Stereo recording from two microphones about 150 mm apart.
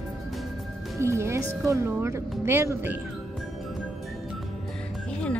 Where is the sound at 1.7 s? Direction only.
15° right (ahead or behind).